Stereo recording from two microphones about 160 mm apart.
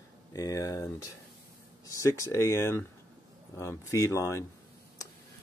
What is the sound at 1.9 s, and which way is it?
Speech, 20° left (ahead or behind).